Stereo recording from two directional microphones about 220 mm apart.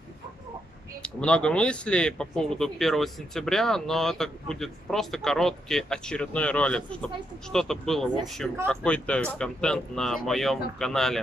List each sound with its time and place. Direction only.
1.0 s speech: 5° left (ahead or behind)